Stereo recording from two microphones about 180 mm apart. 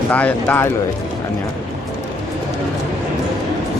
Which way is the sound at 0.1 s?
10° left (ahead or behind).